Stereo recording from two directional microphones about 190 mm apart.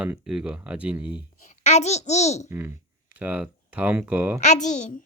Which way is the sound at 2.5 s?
10° right (ahead or behind).